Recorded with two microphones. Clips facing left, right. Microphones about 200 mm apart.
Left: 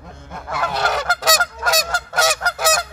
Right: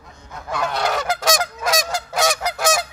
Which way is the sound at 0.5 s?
5° left (ahead or behind).